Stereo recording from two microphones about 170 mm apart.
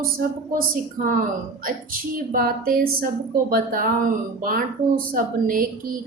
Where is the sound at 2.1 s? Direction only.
55° right (ahead or behind).